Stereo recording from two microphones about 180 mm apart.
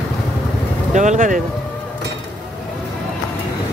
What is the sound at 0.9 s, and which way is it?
Speech, 45° right (ahead or behind).